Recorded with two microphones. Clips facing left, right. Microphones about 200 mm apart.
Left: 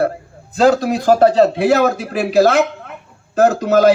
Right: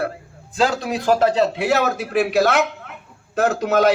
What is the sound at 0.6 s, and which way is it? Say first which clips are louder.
A woman's voice: left 7 dB; 40° left (ahead or behind).